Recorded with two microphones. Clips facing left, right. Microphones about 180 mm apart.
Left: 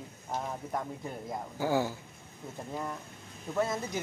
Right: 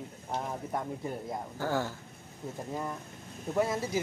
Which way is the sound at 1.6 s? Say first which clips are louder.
Left 3 dB; 10° left (ahead or behind).